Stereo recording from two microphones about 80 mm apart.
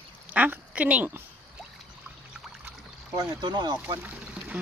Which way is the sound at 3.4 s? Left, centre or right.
Right.